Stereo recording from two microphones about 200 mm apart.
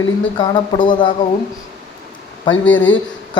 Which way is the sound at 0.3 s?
25° left (ahead or behind).